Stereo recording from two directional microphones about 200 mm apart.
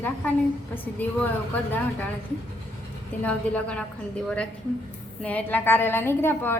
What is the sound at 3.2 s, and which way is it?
Speech, 5° left (ahead or behind).